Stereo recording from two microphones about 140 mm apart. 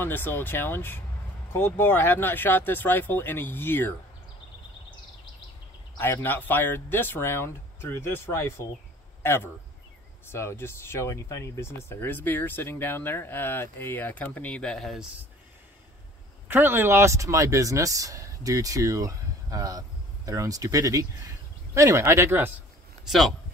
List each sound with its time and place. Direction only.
0.0 s speech: 15° left (ahead or behind)
5.9 s a man's voice: 15° left (ahead or behind)
16.4 s speech: 15° right (ahead or behind)
23.0 s speech: centre (ahead or behind)